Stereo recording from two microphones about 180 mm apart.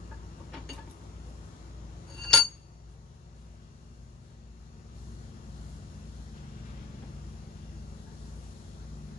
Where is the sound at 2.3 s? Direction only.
5° left (ahead or behind).